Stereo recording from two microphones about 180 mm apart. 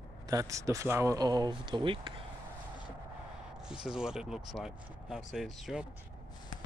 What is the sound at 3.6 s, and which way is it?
Speech, 5° right (ahead or behind).